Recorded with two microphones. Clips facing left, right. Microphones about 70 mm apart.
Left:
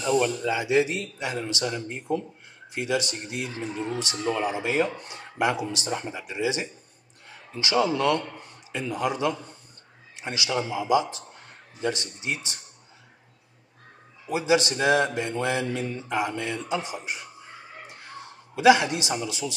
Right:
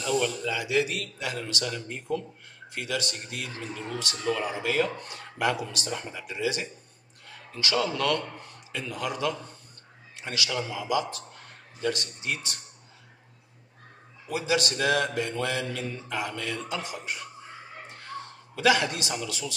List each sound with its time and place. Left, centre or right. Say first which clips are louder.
0.0 s a man's voice: left 4 dB; left
14.2 s a man's voice: left 4 dB; left
18.5 s a man's voice: left 5 dB; left